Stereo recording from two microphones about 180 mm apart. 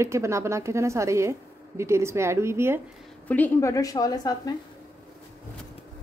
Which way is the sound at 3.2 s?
10° left (ahead or behind).